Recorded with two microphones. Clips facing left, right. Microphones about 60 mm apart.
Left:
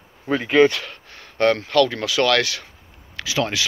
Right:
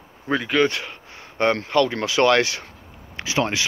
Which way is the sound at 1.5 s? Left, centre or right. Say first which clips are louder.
Left 2 dB; right.